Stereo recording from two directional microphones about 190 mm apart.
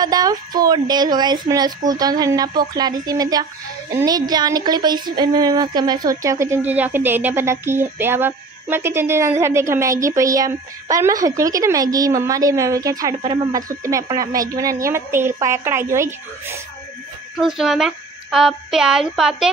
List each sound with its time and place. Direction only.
0.0 s a woman's voice: 20° right (ahead or behind)
17.4 s speech: centre (ahead or behind)